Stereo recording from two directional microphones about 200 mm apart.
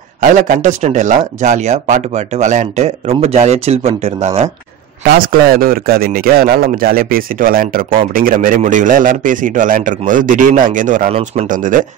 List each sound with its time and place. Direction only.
0.2 s speech: 40° right (ahead or behind)
5.0 s speech: 45° right (ahead or behind)